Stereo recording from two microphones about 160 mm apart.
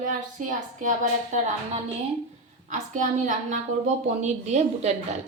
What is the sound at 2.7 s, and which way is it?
A woman's voice, 50° right (ahead or behind).